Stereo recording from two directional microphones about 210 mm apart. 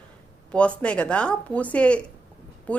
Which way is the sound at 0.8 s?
5° left (ahead or behind).